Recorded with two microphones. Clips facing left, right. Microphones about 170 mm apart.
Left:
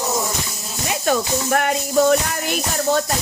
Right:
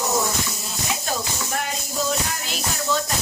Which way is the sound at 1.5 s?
65° left (ahead or behind).